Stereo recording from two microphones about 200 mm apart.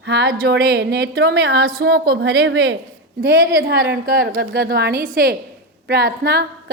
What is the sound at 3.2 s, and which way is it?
A woman's voice, 50° right (ahead or behind).